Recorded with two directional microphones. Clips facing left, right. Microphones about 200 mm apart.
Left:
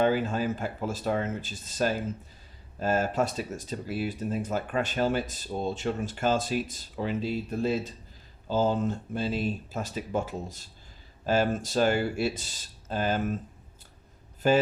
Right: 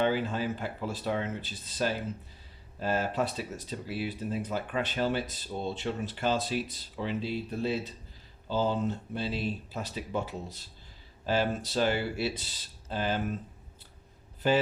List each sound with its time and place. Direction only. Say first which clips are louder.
0.0 s speech: left 3 dB; 45° left (ahead or behind)
14.4 s speech: left 3 dB; 45° left (ahead or behind)